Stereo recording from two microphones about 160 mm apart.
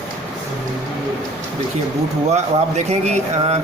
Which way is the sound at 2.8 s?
45° right (ahead or behind).